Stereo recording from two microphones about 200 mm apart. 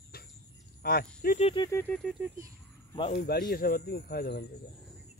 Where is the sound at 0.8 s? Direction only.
50° left (ahead or behind).